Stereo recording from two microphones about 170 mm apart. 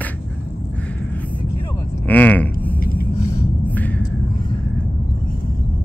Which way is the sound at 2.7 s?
60° left (ahead or behind).